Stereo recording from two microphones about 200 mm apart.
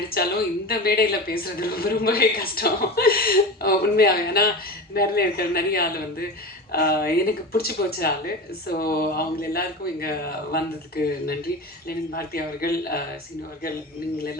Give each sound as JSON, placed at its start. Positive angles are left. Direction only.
{"t": 0.1, "sound": "a woman's voice", "side_deg": 50}